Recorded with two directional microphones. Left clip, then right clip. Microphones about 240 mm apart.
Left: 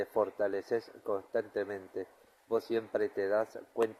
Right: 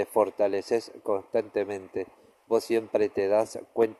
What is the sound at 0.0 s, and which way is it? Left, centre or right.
Speech, right.